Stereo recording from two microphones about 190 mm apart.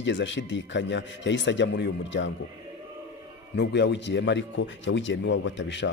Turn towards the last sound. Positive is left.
turn(degrees=70)  # may be behind; listen again after turning